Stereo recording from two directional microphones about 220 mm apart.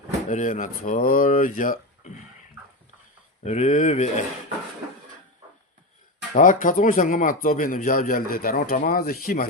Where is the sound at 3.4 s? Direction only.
30° left (ahead or behind).